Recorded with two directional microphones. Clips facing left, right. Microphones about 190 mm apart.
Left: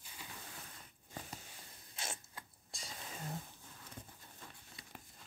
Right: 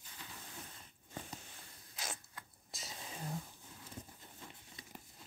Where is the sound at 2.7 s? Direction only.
5° right (ahead or behind).